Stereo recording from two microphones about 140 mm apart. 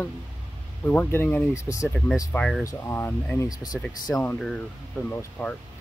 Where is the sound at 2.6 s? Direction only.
20° left (ahead or behind).